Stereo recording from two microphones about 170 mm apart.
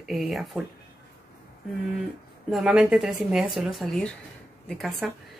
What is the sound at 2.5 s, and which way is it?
Speech, 5° right (ahead or behind).